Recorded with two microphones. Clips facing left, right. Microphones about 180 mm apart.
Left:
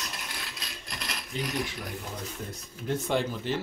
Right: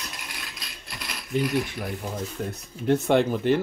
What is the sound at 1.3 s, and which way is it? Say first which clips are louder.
Speech: right 10 dB; 55° right (ahead or behind).